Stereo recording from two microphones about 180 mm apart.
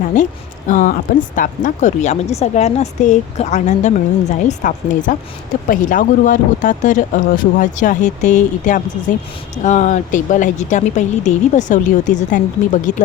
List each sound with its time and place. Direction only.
0.2 s a woman's voice: 45° left (ahead or behind)